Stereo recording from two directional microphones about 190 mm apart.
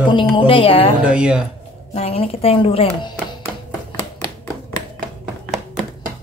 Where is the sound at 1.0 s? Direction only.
5° right (ahead or behind).